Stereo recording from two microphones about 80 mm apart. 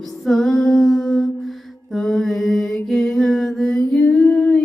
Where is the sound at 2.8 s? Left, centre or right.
Centre.